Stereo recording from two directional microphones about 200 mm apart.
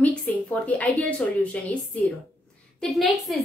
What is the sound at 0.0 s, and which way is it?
A woman's voice, 5° left (ahead or behind).